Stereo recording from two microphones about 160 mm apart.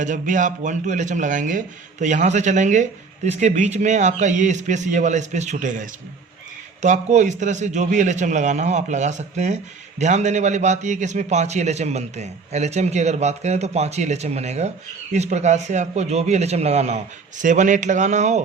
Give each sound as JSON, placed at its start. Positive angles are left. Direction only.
{"t": 0.0, "sound": "speech", "side_deg": -50}